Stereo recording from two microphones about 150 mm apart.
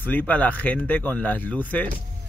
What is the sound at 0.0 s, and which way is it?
Speech, 10° left (ahead or behind).